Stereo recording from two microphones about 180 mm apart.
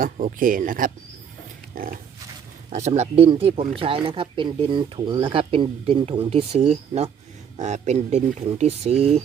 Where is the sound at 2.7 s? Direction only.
40° right (ahead or behind).